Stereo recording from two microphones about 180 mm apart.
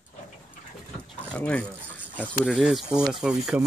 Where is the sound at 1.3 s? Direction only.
5° left (ahead or behind).